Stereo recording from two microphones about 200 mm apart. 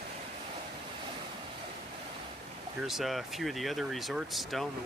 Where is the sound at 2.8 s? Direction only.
Centre (ahead or behind).